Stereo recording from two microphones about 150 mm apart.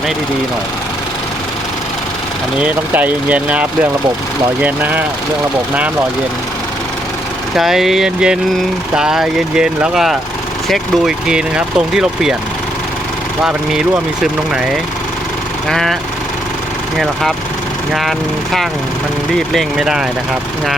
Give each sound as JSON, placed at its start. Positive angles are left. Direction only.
{"t": 2.6, "sound": "speech", "side_deg": -10}
{"t": 7.5, "sound": "speech", "side_deg": 0}
{"t": 13.4, "sound": "speech", "side_deg": -5}
{"t": 19.3, "sound": "speech", "side_deg": 0}